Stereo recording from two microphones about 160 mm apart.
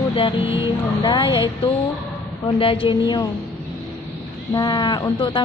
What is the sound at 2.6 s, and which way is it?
Speech, 35° left (ahead or behind).